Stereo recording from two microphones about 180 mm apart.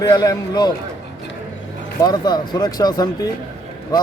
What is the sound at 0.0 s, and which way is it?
Speech, 20° left (ahead or behind).